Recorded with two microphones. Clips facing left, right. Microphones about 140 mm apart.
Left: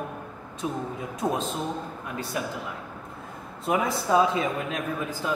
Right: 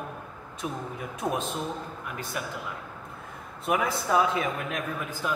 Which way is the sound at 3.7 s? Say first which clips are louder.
Left 2 dB; 25° left (ahead or behind).